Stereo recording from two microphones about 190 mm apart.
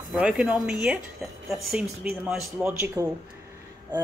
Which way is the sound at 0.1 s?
5° right (ahead or behind).